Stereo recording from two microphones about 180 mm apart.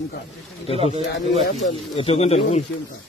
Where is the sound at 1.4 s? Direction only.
45° left (ahead or behind).